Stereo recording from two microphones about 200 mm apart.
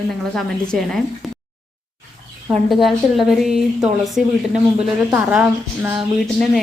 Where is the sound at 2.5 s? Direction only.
Centre (ahead or behind).